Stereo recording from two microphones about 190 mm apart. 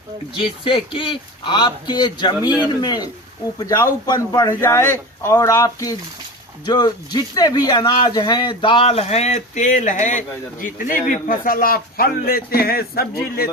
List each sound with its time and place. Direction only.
0.6 s a man's voice: 25° left (ahead or behind); by 13.5 s 50° left (ahead or behind)